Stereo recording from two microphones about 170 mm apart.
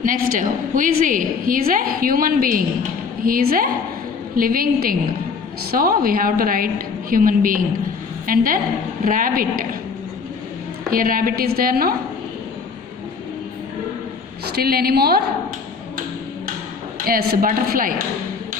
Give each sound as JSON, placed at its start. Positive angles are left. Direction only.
{"t": 0.0, "sound": "a woman's voice", "side_deg": -55}
{"t": 10.9, "sound": "a woman's voice", "side_deg": -55}
{"t": 14.4, "sound": "a woman's voice", "side_deg": -65}
{"t": 17.0, "sound": "a woman's voice", "side_deg": -60}